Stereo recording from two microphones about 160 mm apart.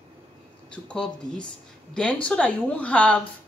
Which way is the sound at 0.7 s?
5° left (ahead or behind).